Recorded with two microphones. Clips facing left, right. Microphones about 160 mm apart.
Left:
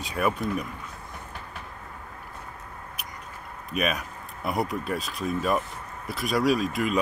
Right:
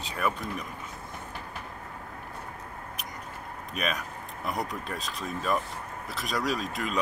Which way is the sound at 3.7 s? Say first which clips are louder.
Left 5 dB; 10° left (ahead or behind).